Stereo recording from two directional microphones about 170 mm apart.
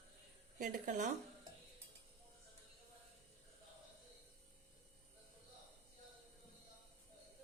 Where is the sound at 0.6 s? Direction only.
50° right (ahead or behind).